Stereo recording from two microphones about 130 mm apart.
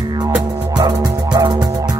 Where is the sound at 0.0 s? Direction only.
30° right (ahead or behind).